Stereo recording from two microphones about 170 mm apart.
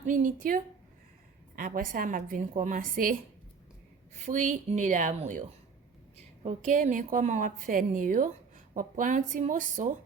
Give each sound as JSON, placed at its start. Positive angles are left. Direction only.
{"t": 0.0, "sound": "a woman's voice", "side_deg": -50}